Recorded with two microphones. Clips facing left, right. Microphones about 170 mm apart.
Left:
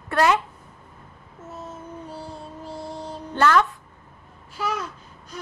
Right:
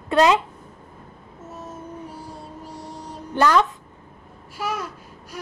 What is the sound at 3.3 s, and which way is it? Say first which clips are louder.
Speech: right 1 dB; 15° right (ahead or behind).